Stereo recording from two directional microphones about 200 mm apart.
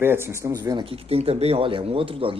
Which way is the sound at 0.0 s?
10° right (ahead or behind).